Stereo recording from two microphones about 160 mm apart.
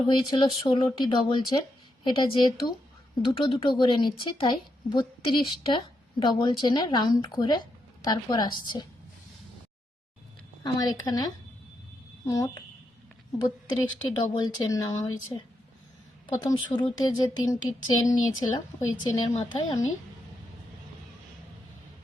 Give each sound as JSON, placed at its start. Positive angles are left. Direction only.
{"t": 0.2, "sound": "a woman's voice", "side_deg": 30}
{"t": 10.6, "sound": "speech", "side_deg": 25}
{"t": 19.3, "sound": "a woman's voice", "side_deg": 45}